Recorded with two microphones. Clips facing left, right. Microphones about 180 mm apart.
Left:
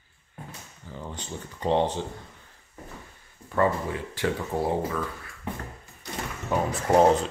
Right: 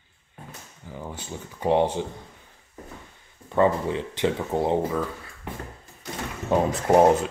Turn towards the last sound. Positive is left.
turn(degrees=-20)  # may be behind; listen again after turning